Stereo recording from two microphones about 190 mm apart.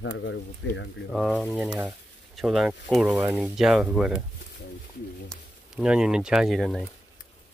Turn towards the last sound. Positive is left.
turn(degrees=0)  # may be behind; listen again after turning